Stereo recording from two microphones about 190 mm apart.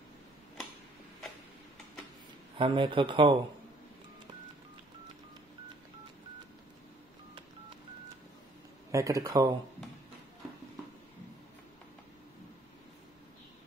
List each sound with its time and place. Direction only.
2.5 s speech: 25° right (ahead or behind)
8.9 s speech: 15° right (ahead or behind)